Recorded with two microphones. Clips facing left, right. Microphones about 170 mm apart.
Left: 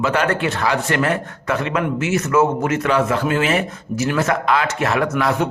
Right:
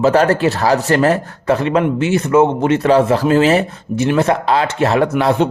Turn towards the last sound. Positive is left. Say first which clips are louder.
# right 5 dB
turn(degrees=-30)  # may be behind; listen again after turning